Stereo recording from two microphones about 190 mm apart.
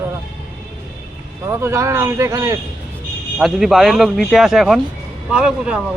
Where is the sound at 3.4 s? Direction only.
Centre (ahead or behind).